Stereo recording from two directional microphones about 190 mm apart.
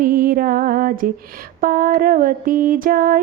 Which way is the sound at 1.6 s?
50° right (ahead or behind).